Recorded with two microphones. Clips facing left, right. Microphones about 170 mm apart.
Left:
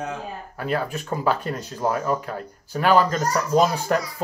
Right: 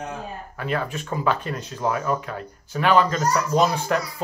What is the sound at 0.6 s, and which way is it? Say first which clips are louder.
Speech: left 1 dB; 40° left (ahead or behind).